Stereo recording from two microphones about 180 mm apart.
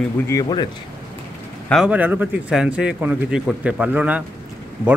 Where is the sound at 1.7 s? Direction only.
5° right (ahead or behind).